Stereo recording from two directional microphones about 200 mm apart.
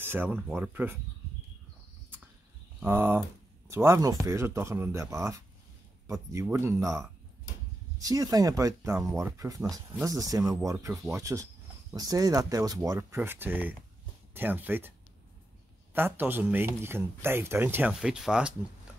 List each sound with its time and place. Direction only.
0.0 s speech: 10° right (ahead or behind)
2.8 s speech: 10° right (ahead or behind)